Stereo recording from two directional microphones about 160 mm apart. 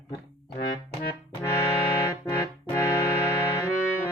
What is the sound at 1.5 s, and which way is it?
Music, 20° left (ahead or behind).